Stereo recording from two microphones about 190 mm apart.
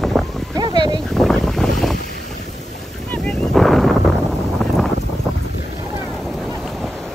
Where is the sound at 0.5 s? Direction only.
25° right (ahead or behind).